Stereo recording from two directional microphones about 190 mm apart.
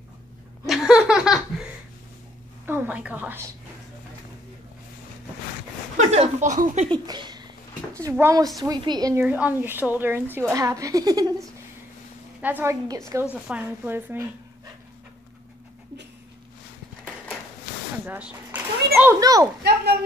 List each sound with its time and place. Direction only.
0.7 s laughter: centre (ahead or behind)
2.6 s a woman's voice: 10° right (ahead or behind)
5.9 s speech: 35° right (ahead or behind)
7.1 s speech: 20° right (ahead or behind)
18.0 s speech: 10° right (ahead or behind)
19.6 s speech: 55° right (ahead or behind)